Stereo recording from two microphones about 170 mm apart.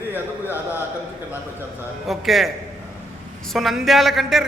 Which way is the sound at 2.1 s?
Centre (ahead or behind).